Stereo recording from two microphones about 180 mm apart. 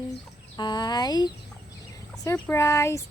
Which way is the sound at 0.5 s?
25° left (ahead or behind).